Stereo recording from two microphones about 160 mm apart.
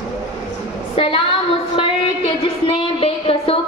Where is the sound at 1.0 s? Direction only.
35° left (ahead or behind).